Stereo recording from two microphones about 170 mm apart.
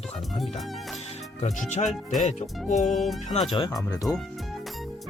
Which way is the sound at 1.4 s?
40° left (ahead or behind).